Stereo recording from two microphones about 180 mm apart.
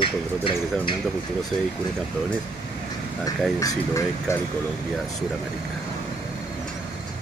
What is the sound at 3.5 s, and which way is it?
Speech, 20° left (ahead or behind).